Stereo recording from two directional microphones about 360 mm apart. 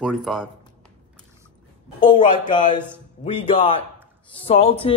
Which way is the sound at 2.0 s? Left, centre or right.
Centre.